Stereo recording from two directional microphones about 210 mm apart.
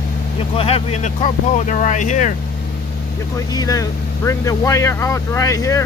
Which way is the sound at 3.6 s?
15° left (ahead or behind).